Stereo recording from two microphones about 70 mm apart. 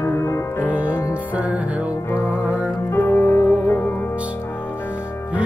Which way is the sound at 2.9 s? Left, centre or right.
Left.